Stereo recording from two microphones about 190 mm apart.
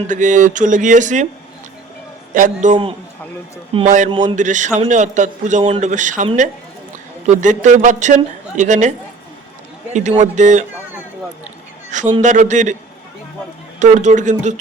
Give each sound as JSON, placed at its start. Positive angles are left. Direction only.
{"t": 0.1, "sound": "a man's voice", "side_deg": -40}
{"t": 2.3, "sound": "a man's voice", "side_deg": -40}
{"t": 7.3, "sound": "a man's voice", "side_deg": -40}
{"t": 11.9, "sound": "a sound", "side_deg": -40}
{"t": 12.2, "sound": "a man's voice", "side_deg": -40}
{"t": 13.7, "sound": "a man's voice", "side_deg": -40}